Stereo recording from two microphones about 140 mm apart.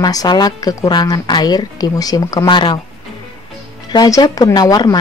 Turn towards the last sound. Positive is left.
turn(degrees=25)  # may be behind; listen again after turning